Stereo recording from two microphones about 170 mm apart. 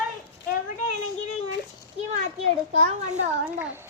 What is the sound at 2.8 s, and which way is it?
Speech, 40° right (ahead or behind).